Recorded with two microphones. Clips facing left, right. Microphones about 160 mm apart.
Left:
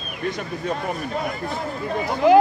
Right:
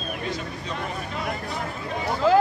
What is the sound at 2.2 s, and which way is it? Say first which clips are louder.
Speech: left 5 dB; 15° left (ahead or behind).